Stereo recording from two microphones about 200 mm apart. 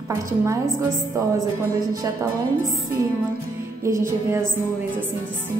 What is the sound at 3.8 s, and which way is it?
Speech, 15° right (ahead or behind).